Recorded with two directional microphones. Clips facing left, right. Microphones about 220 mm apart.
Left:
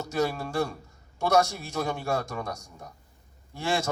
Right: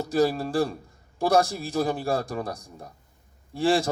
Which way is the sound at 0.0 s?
35° right (ahead or behind).